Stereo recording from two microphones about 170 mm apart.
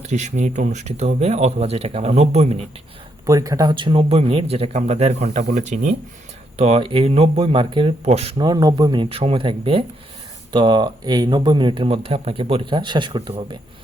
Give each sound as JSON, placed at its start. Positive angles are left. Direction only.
{"t": 0.1, "sound": "speech", "side_deg": -45}
{"t": 3.2, "sound": "speech", "side_deg": -20}